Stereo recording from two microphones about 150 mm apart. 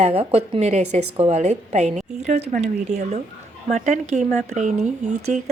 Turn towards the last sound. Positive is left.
turn(degrees=-50)  # may be behind; listen again after turning